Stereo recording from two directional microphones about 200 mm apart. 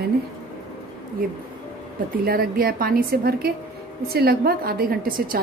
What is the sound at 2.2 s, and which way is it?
A woman's voice, 50° right (ahead or behind).